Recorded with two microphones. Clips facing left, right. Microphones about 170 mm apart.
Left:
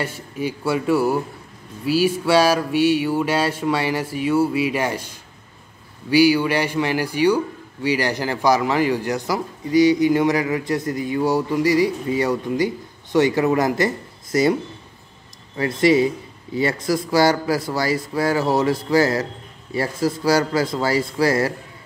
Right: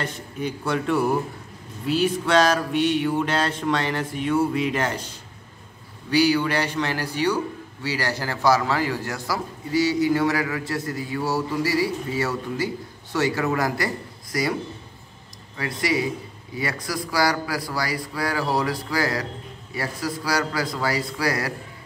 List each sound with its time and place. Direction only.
0.0 s a man's voice: 10° left (ahead or behind)
6.0 s a man's voice: 10° left (ahead or behind)
15.5 s a man's voice: 25° left (ahead or behind)